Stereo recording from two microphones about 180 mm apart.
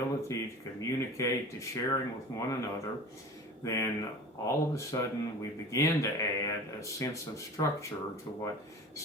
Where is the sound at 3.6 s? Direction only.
15° left (ahead or behind).